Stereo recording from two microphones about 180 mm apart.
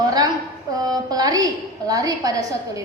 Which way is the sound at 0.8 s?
20° right (ahead or behind).